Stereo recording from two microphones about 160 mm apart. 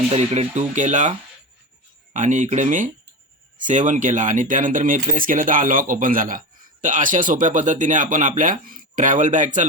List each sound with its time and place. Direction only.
0.1 s speech: 40° right (ahead or behind)
2.1 s speech: 50° right (ahead or behind)